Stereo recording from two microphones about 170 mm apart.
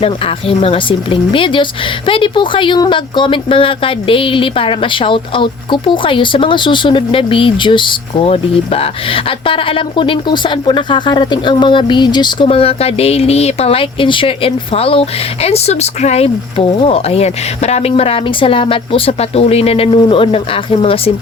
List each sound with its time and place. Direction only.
0.0 s speech: 35° left (ahead or behind)